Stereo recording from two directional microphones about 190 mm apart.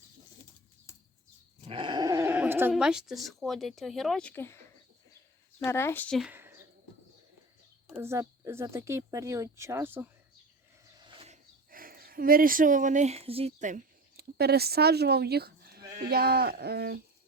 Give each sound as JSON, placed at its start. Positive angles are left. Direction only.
{"t": 1.6, "sound": "speech", "side_deg": -25}
{"t": 5.5, "sound": "speech", "side_deg": 10}
{"t": 6.3, "sound": "a sound", "side_deg": -10}
{"t": 7.9, "sound": "speech", "side_deg": -10}
{"t": 11.0, "sound": "a sound", "side_deg": -30}
{"t": 11.7, "sound": "speech", "side_deg": -50}
{"t": 14.2, "sound": "speech", "side_deg": -55}